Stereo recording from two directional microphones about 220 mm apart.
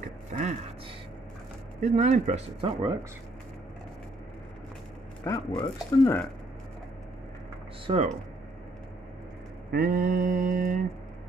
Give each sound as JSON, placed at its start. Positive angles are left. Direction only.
{"t": 0.3, "sound": "a sound", "side_deg": -35}
{"t": 1.8, "sound": "speech", "side_deg": -30}
{"t": 5.2, "sound": "speech", "side_deg": 15}
{"t": 7.8, "sound": "speech", "side_deg": -30}
{"t": 9.7, "sound": "speech", "side_deg": -45}